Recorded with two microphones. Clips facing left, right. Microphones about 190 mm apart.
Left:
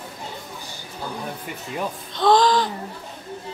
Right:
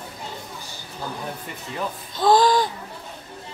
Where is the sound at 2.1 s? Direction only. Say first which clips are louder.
Even; 5° right (ahead or behind).